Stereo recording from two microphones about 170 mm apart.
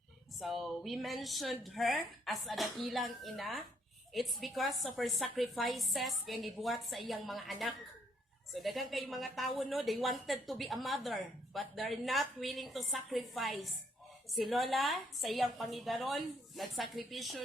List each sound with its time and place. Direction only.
0.3 s a woman's voice: centre (ahead or behind)